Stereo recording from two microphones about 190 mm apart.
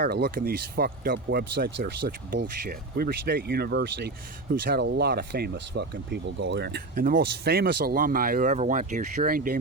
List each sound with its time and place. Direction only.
0.0 s speech: 50° right (ahead or behind)